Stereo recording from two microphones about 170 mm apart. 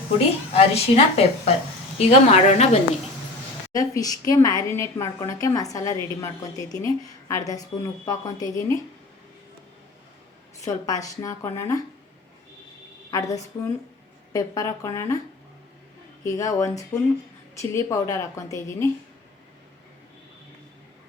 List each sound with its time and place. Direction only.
0.5 s a woman's voice: 35° left (ahead or behind)
3.7 s a woman's voice: 20° left (ahead or behind)
10.6 s a woman's voice: 20° left (ahead or behind)
13.1 s a woman's voice: 20° left (ahead or behind)
16.2 s a woman's voice: 20° left (ahead or behind)